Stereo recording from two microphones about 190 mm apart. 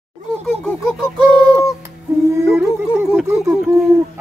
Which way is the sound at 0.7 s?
5° left (ahead or behind).